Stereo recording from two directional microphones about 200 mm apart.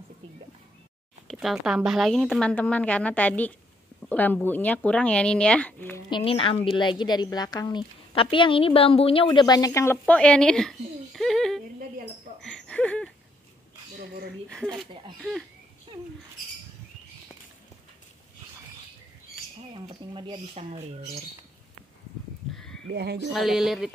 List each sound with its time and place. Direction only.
1.2 s a woman's voice: centre (ahead or behind)
6.0 s a woman's voice: 25° left (ahead or behind); by 11.6 s centre (ahead or behind)
12.4 s laughter: 5° left (ahead or behind)
13.9 s a sound: 55° right (ahead or behind)
20.2 s speech: 25° right (ahead or behind)
22.5 s a sound: 5° left (ahead or behind)
22.8 s speech: 55° right (ahead or behind)
23.3 s a woman's voice: centre (ahead or behind)